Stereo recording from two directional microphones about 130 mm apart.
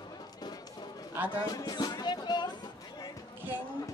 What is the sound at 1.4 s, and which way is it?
Speech, 30° left (ahead or behind).